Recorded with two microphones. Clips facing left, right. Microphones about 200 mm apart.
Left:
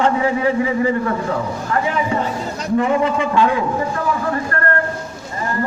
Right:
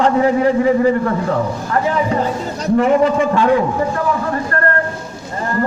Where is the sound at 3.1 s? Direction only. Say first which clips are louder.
Right 3 dB; 40° right (ahead or behind).